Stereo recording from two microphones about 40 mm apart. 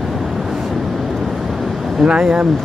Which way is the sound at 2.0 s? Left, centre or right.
Centre.